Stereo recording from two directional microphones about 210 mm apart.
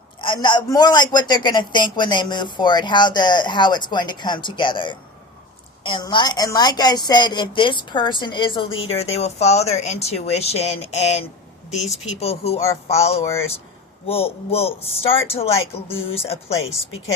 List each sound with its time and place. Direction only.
0.2 s a woman's voice: 20° left (ahead or behind)